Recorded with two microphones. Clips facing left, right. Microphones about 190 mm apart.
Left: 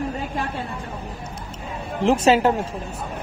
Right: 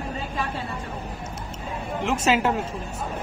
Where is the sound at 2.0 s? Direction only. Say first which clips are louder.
Left 6 dB; 35° left (ahead or behind).